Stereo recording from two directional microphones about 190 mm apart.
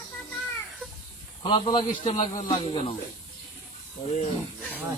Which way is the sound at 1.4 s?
30° left (ahead or behind).